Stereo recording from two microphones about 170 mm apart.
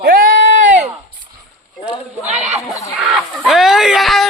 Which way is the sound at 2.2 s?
40° right (ahead or behind).